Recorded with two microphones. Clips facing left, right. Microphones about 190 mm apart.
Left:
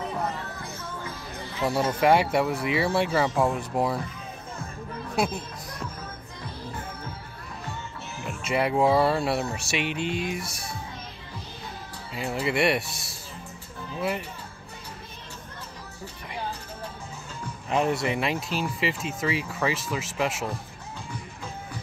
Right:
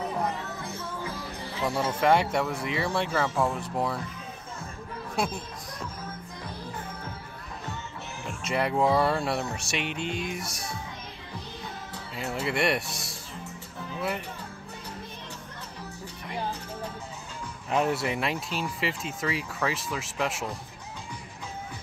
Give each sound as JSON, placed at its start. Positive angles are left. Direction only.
{"t": 0.6, "sound": "music", "side_deg": -30}
{"t": 1.6, "sound": "speech", "side_deg": 5}
{"t": 8.3, "sound": "speech", "side_deg": 5}
{"t": 12.2, "sound": "speech", "side_deg": 5}
{"t": 17.6, "sound": "speech", "side_deg": 0}